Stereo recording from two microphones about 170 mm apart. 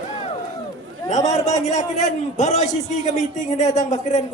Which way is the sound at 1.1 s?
45° left (ahead or behind).